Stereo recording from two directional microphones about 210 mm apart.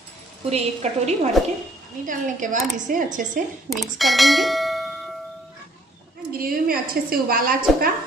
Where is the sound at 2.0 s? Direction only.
40° right (ahead or behind).